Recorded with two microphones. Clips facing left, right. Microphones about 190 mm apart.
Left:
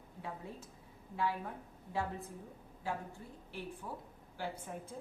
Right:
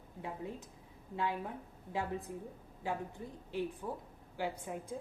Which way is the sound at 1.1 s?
20° right (ahead or behind).